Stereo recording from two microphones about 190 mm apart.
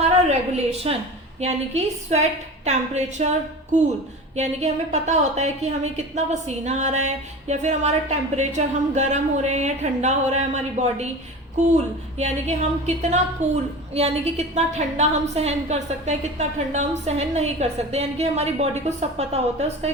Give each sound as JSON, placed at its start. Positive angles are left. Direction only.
{"t": 0.3, "sound": "a woman's voice", "side_deg": -35}